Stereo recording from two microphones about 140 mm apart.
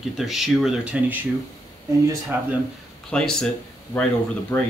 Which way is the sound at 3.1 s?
5° left (ahead or behind).